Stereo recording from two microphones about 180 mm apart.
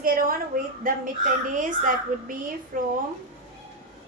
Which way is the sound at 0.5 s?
50° right (ahead or behind).